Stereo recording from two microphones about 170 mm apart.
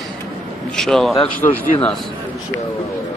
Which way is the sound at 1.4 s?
40° left (ahead or behind).